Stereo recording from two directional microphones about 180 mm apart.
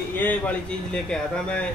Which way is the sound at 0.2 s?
10° left (ahead or behind).